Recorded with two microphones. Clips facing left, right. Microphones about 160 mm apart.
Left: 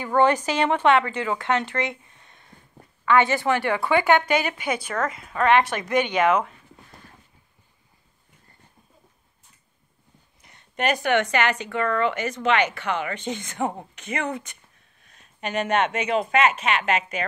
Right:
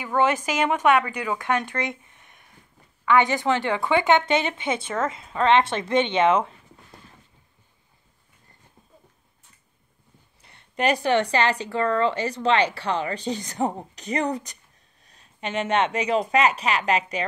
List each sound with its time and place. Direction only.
0.0 s a woman's voice: 5° right (ahead or behind)
1.3 s speech: 20° left (ahead or behind)
1.9 s a sound: 20° right (ahead or behind)
3.1 s a woman's voice: 15° right (ahead or behind)
10.4 s speech: 30° right (ahead or behind)